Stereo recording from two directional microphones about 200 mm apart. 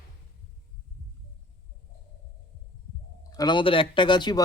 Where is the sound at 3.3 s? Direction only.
25° left (ahead or behind).